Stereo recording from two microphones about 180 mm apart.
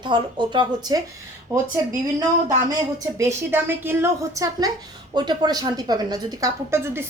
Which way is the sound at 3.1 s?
15° right (ahead or behind).